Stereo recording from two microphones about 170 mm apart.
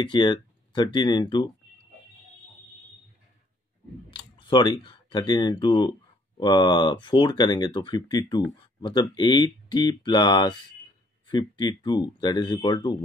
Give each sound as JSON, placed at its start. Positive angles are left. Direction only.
{"t": 0.0, "sound": "speech", "side_deg": 25}
{"t": 4.1, "sound": "speech", "side_deg": 25}